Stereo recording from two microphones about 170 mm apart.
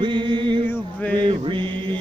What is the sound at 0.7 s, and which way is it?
Male singing, 10° left (ahead or behind).